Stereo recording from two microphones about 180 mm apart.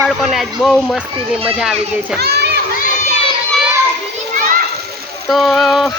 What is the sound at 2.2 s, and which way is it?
Speech, 65° right (ahead or behind).